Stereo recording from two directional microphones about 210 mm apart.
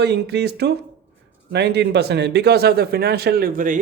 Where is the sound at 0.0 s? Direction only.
50° right (ahead or behind).